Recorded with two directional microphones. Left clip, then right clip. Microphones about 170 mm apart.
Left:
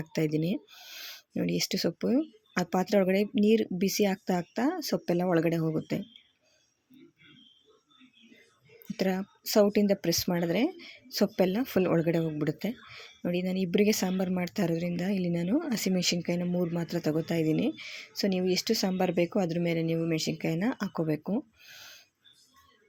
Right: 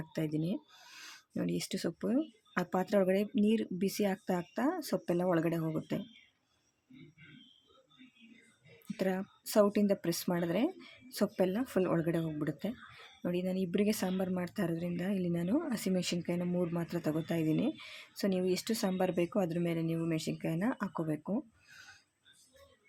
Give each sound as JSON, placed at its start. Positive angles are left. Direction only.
{"t": 0.0, "sound": "speech", "side_deg": 20}
{"t": 0.7, "sound": "a sound", "side_deg": 5}
{"t": 1.4, "sound": "speech", "side_deg": 15}
{"t": 9.0, "sound": "speech", "side_deg": 10}